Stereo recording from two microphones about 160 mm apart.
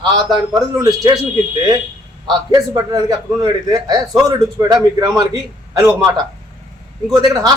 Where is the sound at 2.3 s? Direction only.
25° right (ahead or behind).